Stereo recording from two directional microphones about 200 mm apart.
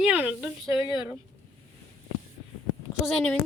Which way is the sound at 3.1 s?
5° left (ahead or behind).